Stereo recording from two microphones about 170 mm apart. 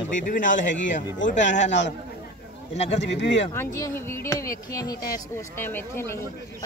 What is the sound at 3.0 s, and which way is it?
Speech, 90° left.